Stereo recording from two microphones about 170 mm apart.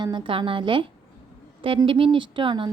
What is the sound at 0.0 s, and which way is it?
A woman's voice, 25° right (ahead or behind).